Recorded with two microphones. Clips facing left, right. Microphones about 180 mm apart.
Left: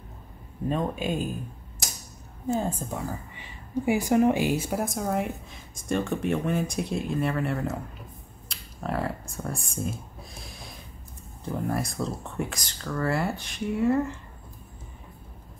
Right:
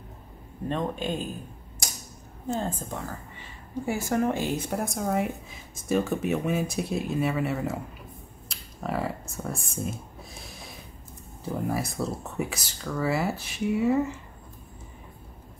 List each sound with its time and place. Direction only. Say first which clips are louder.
0.7 s a woman's voice: left 1 dB; 5° left (ahead or behind)
2.4 s a woman's voice: left 2 dB; 10° left (ahead or behind)
8.5 s a sound: even; centre (ahead or behind)
11.4 s a woman's voice: even; centre (ahead or behind)